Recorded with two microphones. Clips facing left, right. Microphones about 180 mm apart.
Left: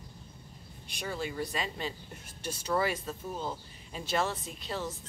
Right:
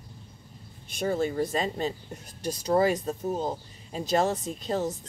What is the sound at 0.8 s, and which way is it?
Speech, 45° right (ahead or behind).